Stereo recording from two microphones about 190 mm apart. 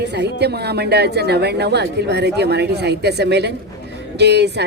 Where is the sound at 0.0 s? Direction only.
60° right (ahead or behind).